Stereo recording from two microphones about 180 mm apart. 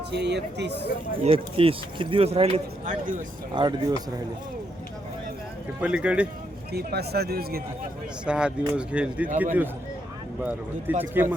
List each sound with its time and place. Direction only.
0.1 s speech: 70° right (ahead or behind)
1.2 s speech: 30° right (ahead or behind)
5.8 s speech: 5° right (ahead or behind)
6.7 s speech: 60° right (ahead or behind)
8.2 s speech: 5° right (ahead or behind)